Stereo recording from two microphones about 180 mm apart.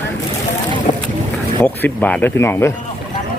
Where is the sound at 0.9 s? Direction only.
45° left (ahead or behind).